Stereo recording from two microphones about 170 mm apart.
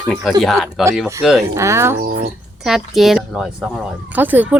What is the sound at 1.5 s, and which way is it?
Speech, 15° right (ahead or behind).